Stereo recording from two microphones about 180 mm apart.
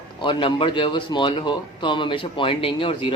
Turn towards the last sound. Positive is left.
turn(degrees=30)  # may be behind; listen again after turning